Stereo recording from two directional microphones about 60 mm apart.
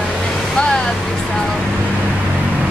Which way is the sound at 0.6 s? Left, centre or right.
Centre.